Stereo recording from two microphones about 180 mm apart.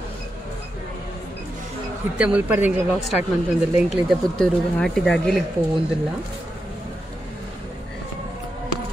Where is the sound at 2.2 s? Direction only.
5° right (ahead or behind).